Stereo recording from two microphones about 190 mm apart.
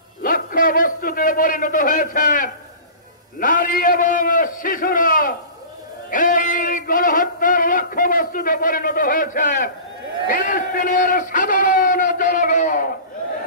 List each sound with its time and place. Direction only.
0.2 s a man's voice: 45° left (ahead or behind)
6.0 s music: 45° left (ahead or behind)
10.2 s a man's voice: 45° left (ahead or behind)